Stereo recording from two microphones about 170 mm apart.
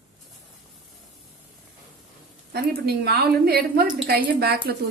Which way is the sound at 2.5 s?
70° right (ahead or behind).